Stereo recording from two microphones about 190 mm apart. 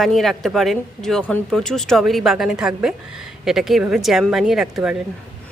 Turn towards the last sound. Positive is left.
turn(degrees=-5)  # may be behind; listen again after turning